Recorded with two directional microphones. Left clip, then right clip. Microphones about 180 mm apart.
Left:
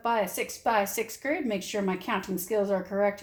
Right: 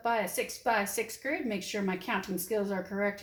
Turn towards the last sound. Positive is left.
turn(degrees=35)  # may be behind; listen again after turning